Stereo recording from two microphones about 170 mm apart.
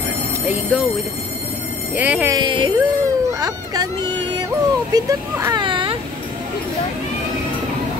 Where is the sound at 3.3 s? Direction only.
20° right (ahead or behind).